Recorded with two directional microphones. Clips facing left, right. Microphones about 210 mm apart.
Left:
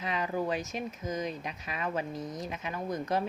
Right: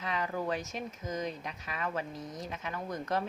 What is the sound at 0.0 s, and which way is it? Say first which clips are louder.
Speech: left 2 dB; 15° left (ahead or behind).